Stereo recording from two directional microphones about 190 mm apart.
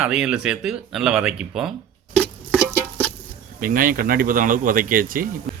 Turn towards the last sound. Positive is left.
turn(degrees=0)  # may be behind; listen again after turning